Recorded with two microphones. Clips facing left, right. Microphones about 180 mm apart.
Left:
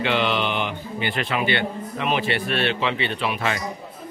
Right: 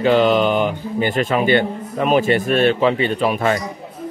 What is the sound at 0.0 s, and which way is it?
A man's voice, 45° right (ahead or behind).